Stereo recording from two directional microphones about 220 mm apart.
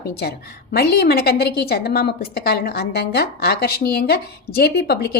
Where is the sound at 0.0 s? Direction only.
45° left (ahead or behind).